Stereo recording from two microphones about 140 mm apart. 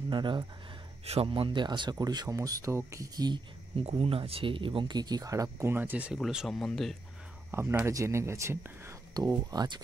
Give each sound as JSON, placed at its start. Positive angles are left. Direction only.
{"t": 0.1, "sound": "speech", "side_deg": -35}
{"t": 3.8, "sound": "speech", "side_deg": -45}
{"t": 6.1, "sound": "speech", "side_deg": 0}
{"t": 7.5, "sound": "speech", "side_deg": -20}